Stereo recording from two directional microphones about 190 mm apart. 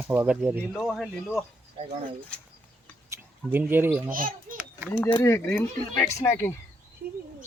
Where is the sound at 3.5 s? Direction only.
10° right (ahead or behind).